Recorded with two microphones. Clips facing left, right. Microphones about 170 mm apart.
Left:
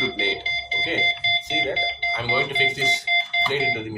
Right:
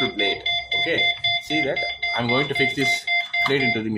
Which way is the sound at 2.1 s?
50° right (ahead or behind).